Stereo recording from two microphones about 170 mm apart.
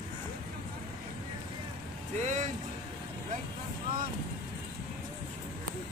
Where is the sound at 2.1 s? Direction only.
45° right (ahead or behind).